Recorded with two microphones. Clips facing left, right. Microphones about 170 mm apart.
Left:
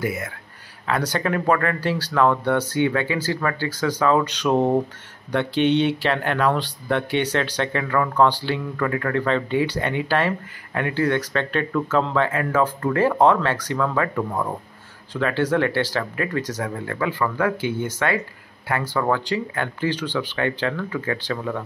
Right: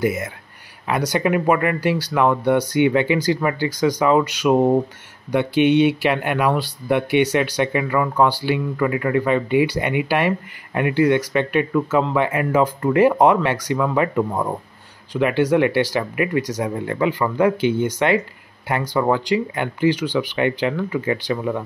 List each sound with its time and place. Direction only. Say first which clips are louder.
0.0 s speech: right 5 dB; 20° right (ahead or behind)